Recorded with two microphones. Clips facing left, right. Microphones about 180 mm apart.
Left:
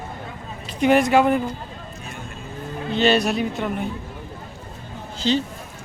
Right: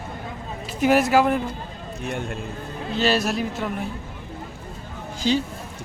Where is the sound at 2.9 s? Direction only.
Centre (ahead or behind).